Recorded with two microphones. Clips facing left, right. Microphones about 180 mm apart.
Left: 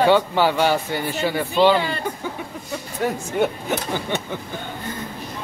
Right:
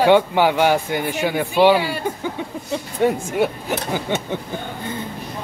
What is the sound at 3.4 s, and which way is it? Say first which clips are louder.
Speech: left 1 dB; 10° right (ahead or behind).